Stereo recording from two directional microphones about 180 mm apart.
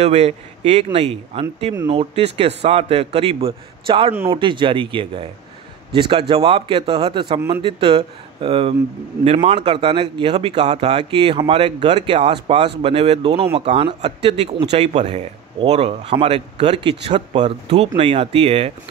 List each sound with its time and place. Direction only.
0.0 s speech: 35° right (ahead or behind)